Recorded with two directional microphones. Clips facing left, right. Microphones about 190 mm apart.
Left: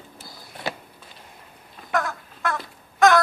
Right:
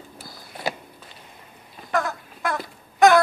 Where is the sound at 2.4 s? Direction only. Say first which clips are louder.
Right 1 dB; 15° right (ahead or behind).